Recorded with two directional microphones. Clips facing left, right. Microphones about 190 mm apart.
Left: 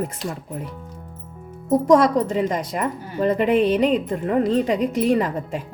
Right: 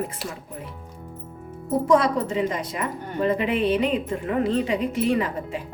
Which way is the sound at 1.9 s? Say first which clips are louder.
Left 4 dB; 40° left (ahead or behind).